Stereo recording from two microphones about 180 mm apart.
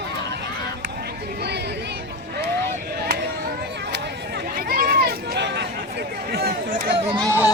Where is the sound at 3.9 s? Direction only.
60° right (ahead or behind).